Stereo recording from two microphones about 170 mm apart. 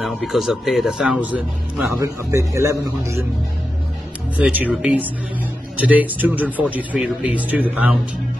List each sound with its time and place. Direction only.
0.0 s a man's voice: centre (ahead or behind)
2.0 s a man's voice: 15° right (ahead or behind)
4.4 s a man's voice: 10° right (ahead or behind)